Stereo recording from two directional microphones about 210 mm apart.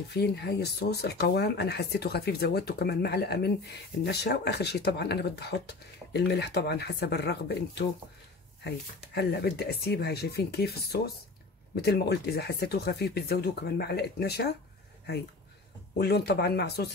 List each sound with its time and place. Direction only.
0.1 s speech: 50° left (ahead or behind)
16.0 s speech: 50° left (ahead or behind)